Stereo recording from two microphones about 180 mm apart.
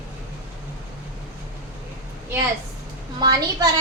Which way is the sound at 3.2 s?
20° right (ahead or behind).